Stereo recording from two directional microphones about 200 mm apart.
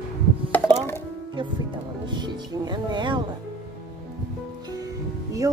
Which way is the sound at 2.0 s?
20° right (ahead or behind).